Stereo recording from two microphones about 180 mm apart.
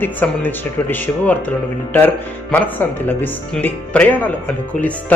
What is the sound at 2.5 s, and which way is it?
Speech, 10° left (ahead or behind).